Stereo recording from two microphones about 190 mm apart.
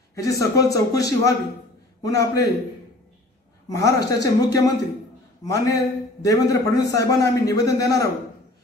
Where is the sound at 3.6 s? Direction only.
20° left (ahead or behind).